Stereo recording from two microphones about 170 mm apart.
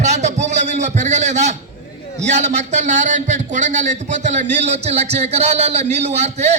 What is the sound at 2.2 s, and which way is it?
A man's voice, 40° right (ahead or behind).